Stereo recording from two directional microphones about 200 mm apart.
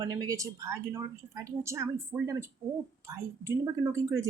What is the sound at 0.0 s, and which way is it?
Speech, 20° right (ahead or behind).